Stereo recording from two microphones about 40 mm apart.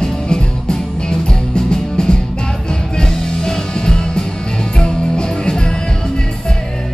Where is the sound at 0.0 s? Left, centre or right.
Centre.